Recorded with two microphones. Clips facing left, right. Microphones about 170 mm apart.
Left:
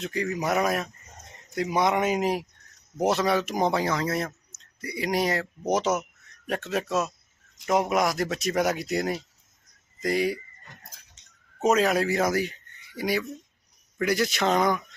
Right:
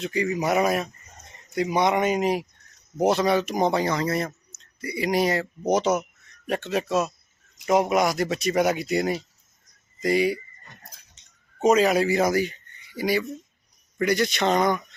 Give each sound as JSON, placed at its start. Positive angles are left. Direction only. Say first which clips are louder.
{"t": 0.0, "sound": "speech", "louder": "right 3 dB", "side_deg": 0}
{"t": 11.6, "sound": "speech", "louder": "right 3 dB", "side_deg": 0}